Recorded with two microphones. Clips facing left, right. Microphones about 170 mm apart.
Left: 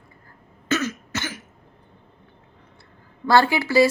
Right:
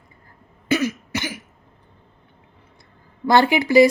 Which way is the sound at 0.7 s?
10° right (ahead or behind).